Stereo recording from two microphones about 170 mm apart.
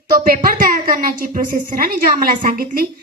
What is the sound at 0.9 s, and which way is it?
A man's voice, 50° right (ahead or behind).